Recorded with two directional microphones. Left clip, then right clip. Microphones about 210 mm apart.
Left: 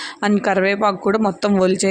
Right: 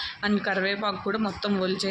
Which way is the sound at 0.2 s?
50° left (ahead or behind).